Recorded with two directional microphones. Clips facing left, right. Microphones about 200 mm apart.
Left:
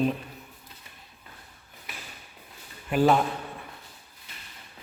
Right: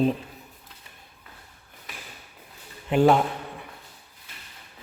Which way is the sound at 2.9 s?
20° right (ahead or behind).